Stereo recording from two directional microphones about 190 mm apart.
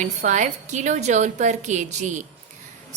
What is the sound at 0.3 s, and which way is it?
A woman's voice, 40° right (ahead or behind).